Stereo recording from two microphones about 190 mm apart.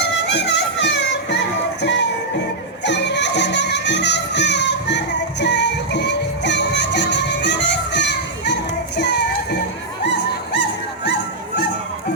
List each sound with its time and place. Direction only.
0.3 s music: 65° left (ahead or behind)